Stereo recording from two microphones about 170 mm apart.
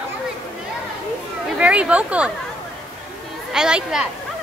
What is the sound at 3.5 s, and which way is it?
Speech, 5° right (ahead or behind).